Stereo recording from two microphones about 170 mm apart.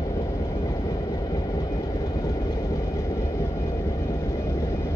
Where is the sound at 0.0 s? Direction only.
20° left (ahead or behind).